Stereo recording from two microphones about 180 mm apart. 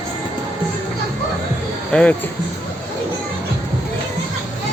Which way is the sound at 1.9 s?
5° left (ahead or behind).